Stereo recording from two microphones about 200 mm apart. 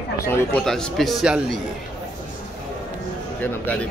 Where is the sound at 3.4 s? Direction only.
10° left (ahead or behind).